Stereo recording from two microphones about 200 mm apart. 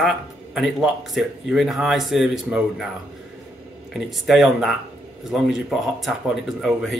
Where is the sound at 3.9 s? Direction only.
Centre (ahead or behind).